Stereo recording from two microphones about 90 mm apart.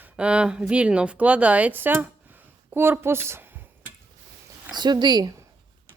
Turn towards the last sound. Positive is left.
turn(degrees=-50)  # may be behind; listen again after turning